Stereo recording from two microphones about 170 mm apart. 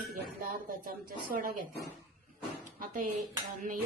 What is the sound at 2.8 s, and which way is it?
Speech, 50° right (ahead or behind).